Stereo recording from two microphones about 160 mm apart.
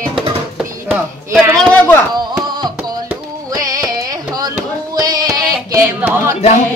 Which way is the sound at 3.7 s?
25° right (ahead or behind).